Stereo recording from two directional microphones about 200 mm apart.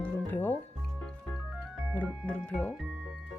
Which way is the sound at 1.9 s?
10° left (ahead or behind).